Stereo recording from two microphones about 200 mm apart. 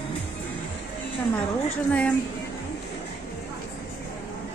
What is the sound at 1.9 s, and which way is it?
Speech, 5° left (ahead or behind).